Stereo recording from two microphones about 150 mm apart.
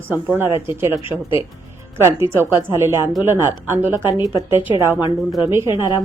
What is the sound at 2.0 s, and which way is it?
A woman's voice, 15° right (ahead or behind).